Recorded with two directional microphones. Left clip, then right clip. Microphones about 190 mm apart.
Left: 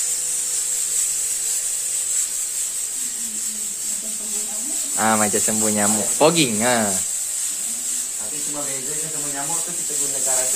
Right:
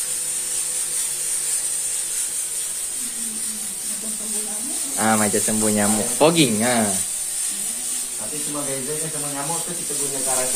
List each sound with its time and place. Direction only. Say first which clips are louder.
4.9 s speech: left 1 dB; 30° left (ahead or behind)